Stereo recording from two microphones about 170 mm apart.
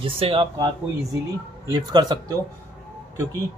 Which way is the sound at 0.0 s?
30° right (ahead or behind).